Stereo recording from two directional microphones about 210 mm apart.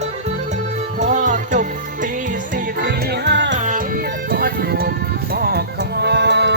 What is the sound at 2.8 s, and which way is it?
Music, 50° right (ahead or behind).